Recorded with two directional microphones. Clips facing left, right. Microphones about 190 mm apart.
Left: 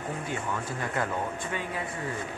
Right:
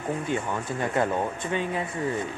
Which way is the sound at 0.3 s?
25° right (ahead or behind).